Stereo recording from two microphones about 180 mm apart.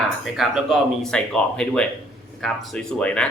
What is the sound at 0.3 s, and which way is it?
Speech, centre (ahead or behind).